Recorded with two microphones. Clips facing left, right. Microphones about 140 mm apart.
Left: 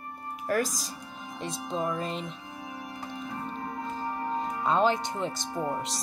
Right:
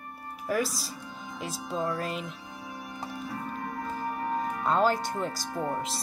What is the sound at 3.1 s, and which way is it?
Music, 25° left (ahead or behind).